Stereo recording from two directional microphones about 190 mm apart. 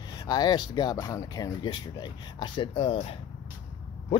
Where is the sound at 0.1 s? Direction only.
20° left (ahead or behind).